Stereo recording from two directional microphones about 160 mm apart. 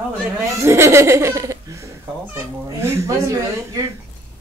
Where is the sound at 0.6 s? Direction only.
15° right (ahead or behind).